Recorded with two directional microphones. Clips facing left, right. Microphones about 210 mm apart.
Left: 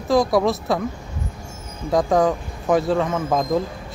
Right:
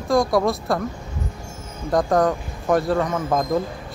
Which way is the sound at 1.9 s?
Centre (ahead or behind).